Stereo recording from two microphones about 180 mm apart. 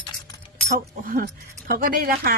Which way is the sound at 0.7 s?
50° right (ahead or behind).